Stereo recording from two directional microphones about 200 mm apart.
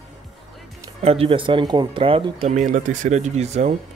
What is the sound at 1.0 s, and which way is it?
Speech, 30° right (ahead or behind).